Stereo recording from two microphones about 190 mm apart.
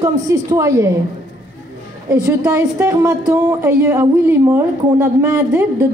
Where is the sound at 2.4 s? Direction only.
15° right (ahead or behind).